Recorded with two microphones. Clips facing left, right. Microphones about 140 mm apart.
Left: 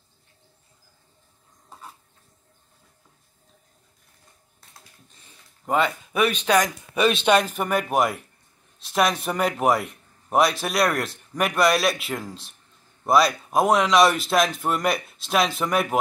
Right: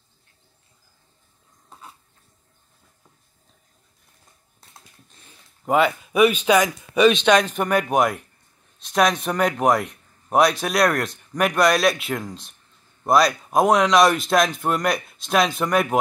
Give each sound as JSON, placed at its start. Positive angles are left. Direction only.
{"t": 5.7, "sound": "a man's voice", "side_deg": -5}